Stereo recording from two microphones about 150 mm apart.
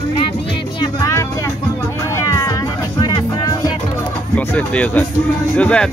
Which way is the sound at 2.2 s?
20° left (ahead or behind).